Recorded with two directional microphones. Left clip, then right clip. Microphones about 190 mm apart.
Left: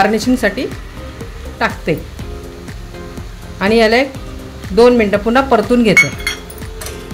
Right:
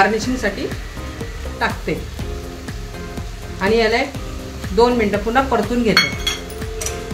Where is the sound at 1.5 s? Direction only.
60° left (ahead or behind).